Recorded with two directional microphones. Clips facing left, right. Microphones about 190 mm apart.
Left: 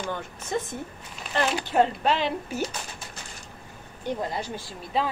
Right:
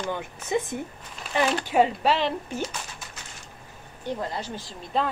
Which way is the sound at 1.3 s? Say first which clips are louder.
Right 1 dB; 5° right (ahead or behind).